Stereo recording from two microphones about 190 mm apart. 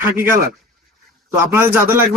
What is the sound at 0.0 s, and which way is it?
Speech, 10° right (ahead or behind).